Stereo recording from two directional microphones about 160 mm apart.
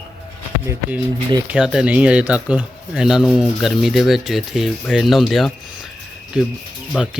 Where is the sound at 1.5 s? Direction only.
5° right (ahead or behind).